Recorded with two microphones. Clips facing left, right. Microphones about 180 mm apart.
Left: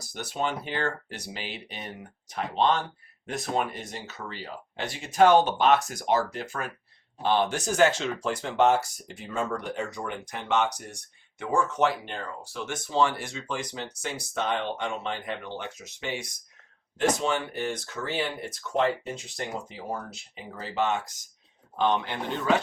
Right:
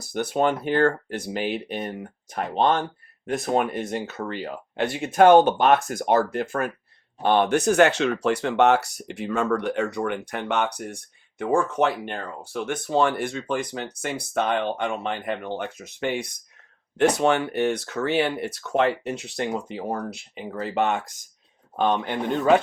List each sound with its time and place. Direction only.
0.0 s speech: 55° right (ahead or behind)